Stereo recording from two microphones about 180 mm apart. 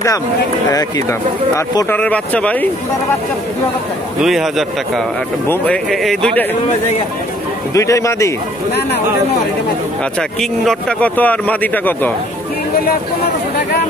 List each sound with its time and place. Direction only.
0.7 s speech: 20° left (ahead or behind)
1.8 s speech: 10° left (ahead or behind)
4.2 s speech: centre (ahead or behind)
7.7 s speech: 15° left (ahead or behind)
10.4 s speech: centre (ahead or behind)